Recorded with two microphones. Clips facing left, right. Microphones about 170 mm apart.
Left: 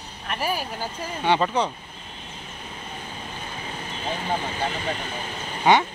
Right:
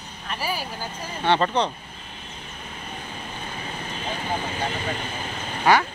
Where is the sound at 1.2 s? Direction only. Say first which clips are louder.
Right 1 dB; 10° left (ahead or behind).